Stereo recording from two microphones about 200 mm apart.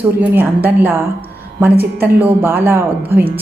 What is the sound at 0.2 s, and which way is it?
A woman's voice, 10° right (ahead or behind).